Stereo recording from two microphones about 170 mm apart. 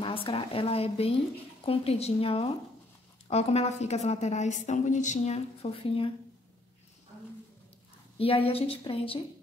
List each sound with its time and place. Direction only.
0.0 s a woman's voice: 30° left (ahead or behind)
8.2 s a woman's voice: 35° left (ahead or behind)